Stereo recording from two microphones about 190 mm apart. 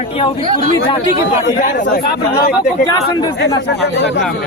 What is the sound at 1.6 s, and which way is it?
Speech, 45° left (ahead or behind).